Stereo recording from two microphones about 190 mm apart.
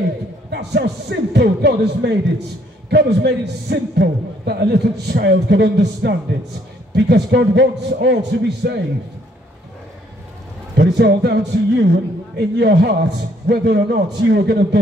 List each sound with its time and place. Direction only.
0.5 s a man's voice: 65° right (ahead or behind)
10.8 s a man's voice: 65° right (ahead or behind)